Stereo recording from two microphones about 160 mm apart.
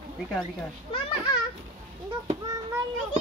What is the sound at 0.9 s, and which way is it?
Speech, 30° left (ahead or behind).